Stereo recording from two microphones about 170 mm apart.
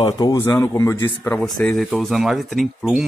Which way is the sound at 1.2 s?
10° left (ahead or behind).